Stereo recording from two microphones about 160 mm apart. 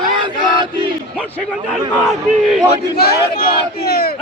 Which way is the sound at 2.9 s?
75° left (ahead or behind).